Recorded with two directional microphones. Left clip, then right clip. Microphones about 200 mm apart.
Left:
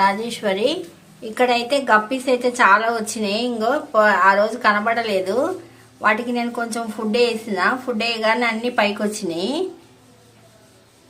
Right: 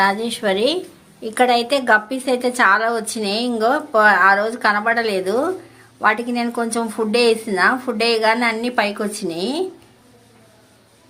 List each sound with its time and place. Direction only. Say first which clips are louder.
0.0 s a woman's voice: right 1 dB; 15° right (ahead or behind)